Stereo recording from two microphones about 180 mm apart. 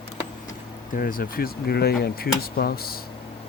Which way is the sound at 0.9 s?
50° left (ahead or behind).